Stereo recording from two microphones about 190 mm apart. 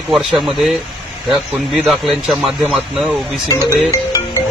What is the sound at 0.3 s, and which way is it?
Speech, centre (ahead or behind).